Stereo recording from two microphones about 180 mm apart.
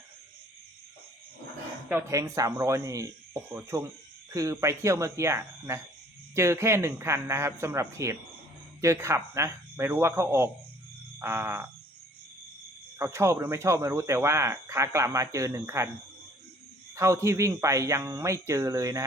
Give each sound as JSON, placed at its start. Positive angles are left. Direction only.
{"t": 1.9, "sound": "speech", "side_deg": -15}
{"t": 13.0, "sound": "speech", "side_deg": -15}
{"t": 16.9, "sound": "speech", "side_deg": -15}